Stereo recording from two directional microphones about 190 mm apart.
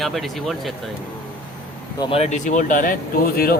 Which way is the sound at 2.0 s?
30° left (ahead or behind).